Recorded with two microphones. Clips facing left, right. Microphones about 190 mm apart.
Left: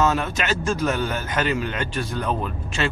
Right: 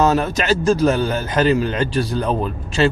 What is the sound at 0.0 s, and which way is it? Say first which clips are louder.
Speech: right 5 dB; 35° right (ahead or behind).